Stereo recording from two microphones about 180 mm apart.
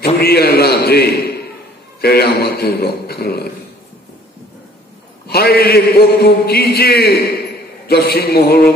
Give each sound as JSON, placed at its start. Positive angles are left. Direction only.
{"t": 0.0, "sound": "a man's voice", "side_deg": 60}
{"t": 5.3, "sound": "a man's voice", "side_deg": 60}